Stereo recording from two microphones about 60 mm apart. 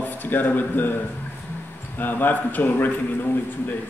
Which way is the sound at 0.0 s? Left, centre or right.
Left.